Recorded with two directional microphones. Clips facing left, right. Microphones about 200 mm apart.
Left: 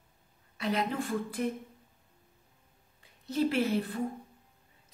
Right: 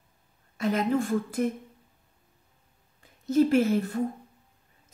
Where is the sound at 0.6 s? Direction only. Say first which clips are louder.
Right 6 dB; 45° right (ahead or behind).